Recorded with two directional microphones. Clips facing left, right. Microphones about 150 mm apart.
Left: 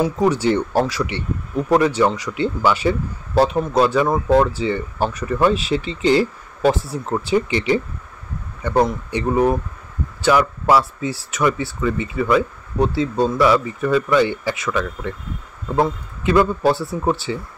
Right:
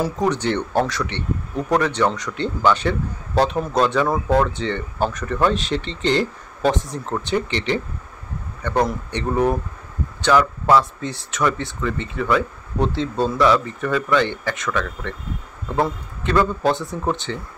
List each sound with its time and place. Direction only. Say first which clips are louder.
0.0 s speech: left 3 dB; 5° left (ahead or behind)